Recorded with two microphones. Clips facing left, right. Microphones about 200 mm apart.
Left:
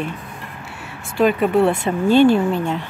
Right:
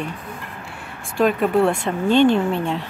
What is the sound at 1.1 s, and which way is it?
Speech, centre (ahead or behind).